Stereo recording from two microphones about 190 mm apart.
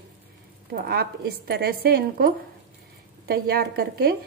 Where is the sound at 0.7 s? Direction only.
55° right (ahead or behind).